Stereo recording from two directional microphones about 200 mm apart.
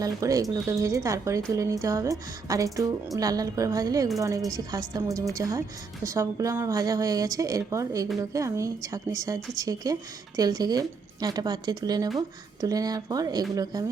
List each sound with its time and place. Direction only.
0.0 s a woman's voice: 15° right (ahead or behind)